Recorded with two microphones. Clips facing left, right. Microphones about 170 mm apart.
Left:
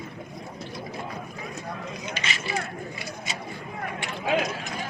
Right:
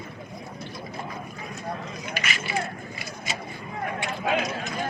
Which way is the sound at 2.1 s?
25° left (ahead or behind).